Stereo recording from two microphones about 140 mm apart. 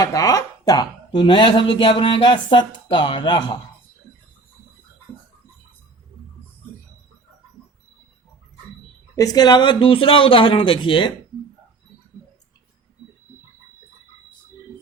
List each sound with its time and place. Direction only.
0.0 s speech: 25° left (ahead or behind)
9.1 s speech: 25° left (ahead or behind)